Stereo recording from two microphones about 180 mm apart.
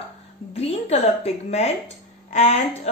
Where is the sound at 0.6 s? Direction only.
35° left (ahead or behind).